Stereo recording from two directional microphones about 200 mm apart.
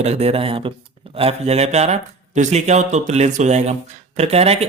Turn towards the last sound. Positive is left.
turn(degrees=-30)  # may be behind; listen again after turning